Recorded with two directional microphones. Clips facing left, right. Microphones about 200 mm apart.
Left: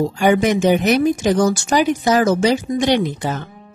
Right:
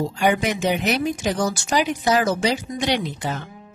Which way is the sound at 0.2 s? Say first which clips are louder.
Left 6 dB; 45° left (ahead or behind).